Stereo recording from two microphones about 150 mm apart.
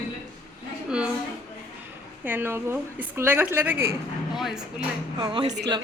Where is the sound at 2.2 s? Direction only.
15° right (ahead or behind).